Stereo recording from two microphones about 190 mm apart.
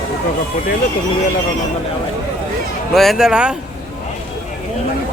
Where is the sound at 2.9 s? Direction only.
Centre (ahead or behind).